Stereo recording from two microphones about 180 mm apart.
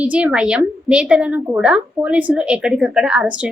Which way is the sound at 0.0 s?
5° right (ahead or behind).